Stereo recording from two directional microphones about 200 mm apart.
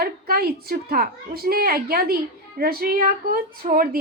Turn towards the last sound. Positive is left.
turn(degrees=-45)  # may be behind; listen again after turning